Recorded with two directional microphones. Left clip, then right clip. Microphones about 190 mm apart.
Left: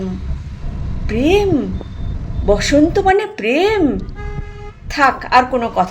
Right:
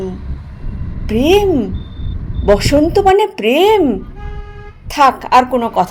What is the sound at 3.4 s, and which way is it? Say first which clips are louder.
A woman's voice: right 3 dB; 50° right (ahead or behind).